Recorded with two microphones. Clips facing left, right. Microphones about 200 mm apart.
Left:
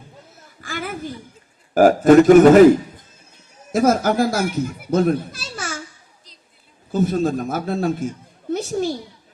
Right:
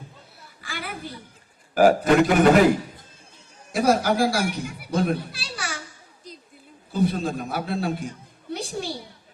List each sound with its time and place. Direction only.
0.6 s a sound: 45° left (ahead or behind)
1.7 s a man's voice: 45° left (ahead or behind)
3.7 s speech: 45° left (ahead or behind)
6.9 s a man's voice: 45° left (ahead or behind)